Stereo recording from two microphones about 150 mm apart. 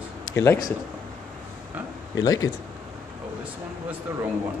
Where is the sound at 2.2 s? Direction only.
25° left (ahead or behind).